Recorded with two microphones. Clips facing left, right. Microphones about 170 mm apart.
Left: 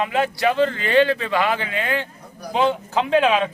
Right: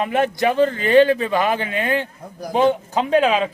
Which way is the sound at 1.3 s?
15° right (ahead or behind).